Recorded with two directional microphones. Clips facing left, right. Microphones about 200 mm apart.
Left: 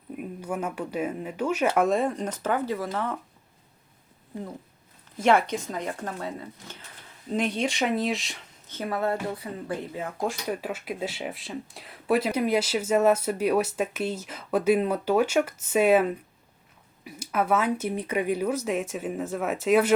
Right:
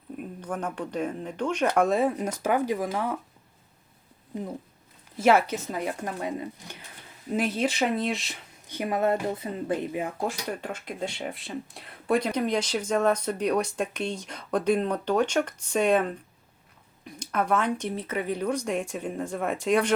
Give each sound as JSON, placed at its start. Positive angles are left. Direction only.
{"t": 0.2, "sound": "speech", "side_deg": 10}
{"t": 5.2, "sound": "speech", "side_deg": -5}
{"t": 8.6, "sound": "speech", "side_deg": -15}
{"t": 10.2, "sound": "speech", "side_deg": 0}